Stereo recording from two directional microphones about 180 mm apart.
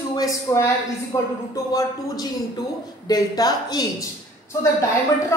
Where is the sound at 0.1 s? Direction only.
20° left (ahead or behind).